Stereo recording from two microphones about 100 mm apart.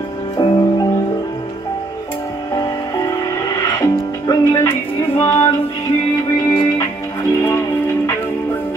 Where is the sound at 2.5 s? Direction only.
40° left (ahead or behind).